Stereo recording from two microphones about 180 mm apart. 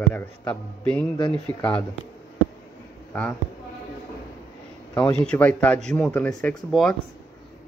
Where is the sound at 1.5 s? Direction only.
25° left (ahead or behind).